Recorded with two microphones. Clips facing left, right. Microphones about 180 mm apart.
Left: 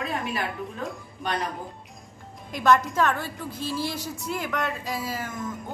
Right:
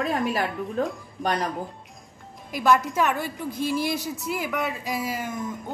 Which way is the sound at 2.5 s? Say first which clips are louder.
Even; 5° right (ahead or behind).